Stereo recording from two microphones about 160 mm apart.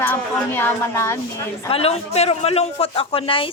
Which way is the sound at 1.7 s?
40° left (ahead or behind).